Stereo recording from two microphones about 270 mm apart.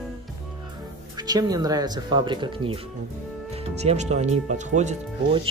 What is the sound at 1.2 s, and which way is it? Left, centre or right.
Speech, centre.